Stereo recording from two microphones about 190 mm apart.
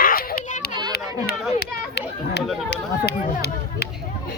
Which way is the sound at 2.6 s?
60° left (ahead or behind).